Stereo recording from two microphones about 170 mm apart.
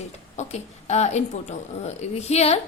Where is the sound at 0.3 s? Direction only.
40° left (ahead or behind).